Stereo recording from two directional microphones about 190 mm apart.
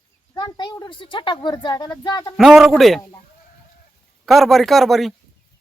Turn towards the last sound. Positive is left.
turn(degrees=0)  # may be behind; listen again after turning